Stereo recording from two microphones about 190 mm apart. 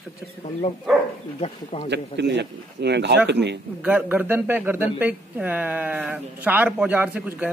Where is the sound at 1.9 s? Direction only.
65° right (ahead or behind).